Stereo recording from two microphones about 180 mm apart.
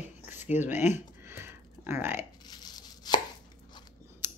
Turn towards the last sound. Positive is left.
turn(degrees=-10)  # may be behind; listen again after turning